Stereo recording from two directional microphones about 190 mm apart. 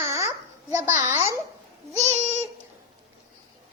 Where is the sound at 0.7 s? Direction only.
15° right (ahead or behind).